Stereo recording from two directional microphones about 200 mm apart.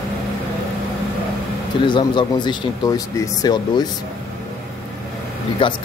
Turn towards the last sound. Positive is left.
turn(degrees=25)  # may be behind; listen again after turning